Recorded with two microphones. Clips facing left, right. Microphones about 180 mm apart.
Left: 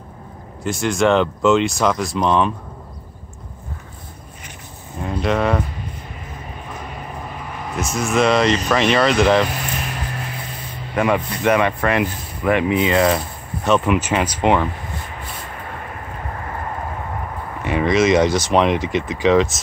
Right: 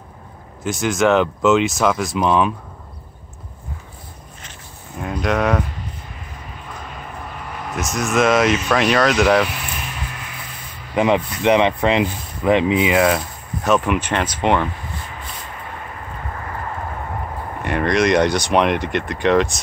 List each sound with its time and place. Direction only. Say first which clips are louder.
0.7 s speech: even; centre (ahead or behind)
5.0 s speech: even; centre (ahead or behind)
7.7 s speech: even; centre (ahead or behind)
11.0 s speech: right 2 dB; 20° right (ahead or behind)
12.9 s speech: even; 5° right (ahead or behind)
17.6 s speech: left 1 dB; centre (ahead or behind)